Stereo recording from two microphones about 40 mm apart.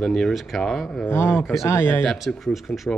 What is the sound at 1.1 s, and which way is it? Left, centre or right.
Speech, left.